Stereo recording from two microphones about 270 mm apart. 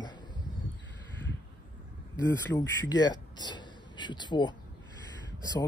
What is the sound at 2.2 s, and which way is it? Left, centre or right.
Speech, centre.